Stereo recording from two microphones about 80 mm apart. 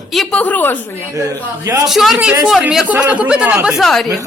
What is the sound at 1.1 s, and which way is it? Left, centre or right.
Speech, right.